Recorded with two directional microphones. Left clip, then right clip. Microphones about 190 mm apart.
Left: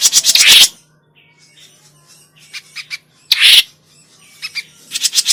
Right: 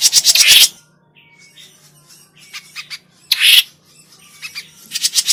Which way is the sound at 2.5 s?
5° left (ahead or behind).